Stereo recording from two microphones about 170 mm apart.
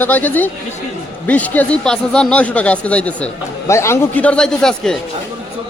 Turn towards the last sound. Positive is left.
turn(degrees=5)  # may be behind; listen again after turning